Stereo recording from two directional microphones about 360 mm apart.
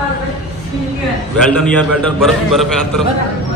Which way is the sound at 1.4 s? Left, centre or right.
Centre.